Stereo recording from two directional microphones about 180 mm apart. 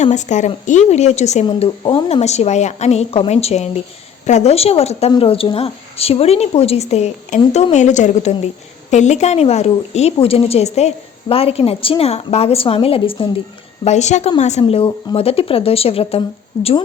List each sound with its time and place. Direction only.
0.0 s a woman's voice: 40° left (ahead or behind)